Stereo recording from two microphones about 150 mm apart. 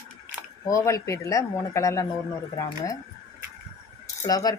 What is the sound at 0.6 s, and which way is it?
Speech, 20° left (ahead or behind).